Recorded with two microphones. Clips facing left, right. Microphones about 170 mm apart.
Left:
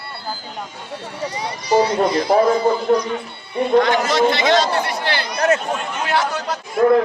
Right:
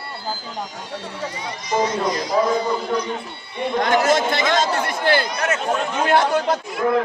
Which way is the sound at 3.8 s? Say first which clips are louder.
Left 1 dB; 50° right (ahead or behind).